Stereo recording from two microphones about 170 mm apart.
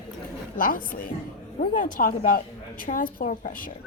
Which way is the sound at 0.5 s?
55° left (ahead or behind).